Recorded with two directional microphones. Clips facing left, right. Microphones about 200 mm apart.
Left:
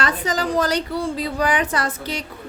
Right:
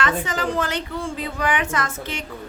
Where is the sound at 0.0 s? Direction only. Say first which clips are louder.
Left 1 dB; 35° left (ahead or behind).